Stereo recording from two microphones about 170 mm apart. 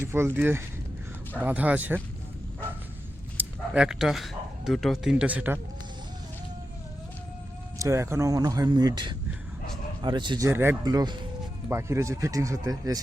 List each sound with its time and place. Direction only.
0.0 s speech: 15° right (ahead or behind)
3.3 s speech: 5° right (ahead or behind)
7.8 s speech: 15° right (ahead or behind)